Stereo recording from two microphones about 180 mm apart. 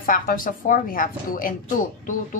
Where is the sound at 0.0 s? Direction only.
50° left (ahead or behind).